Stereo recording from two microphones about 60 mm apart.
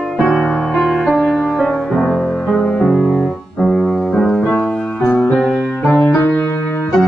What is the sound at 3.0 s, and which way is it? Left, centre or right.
Piano, centre.